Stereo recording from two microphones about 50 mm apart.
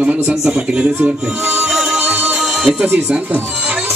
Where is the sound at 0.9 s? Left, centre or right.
Right.